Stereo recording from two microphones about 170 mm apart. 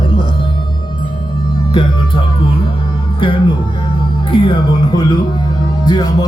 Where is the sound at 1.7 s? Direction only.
30° left (ahead or behind).